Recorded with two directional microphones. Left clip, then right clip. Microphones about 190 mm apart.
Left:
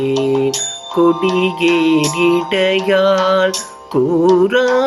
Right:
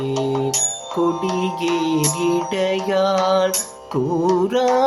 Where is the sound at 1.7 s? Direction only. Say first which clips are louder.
Left 6 dB; 5° left (ahead or behind).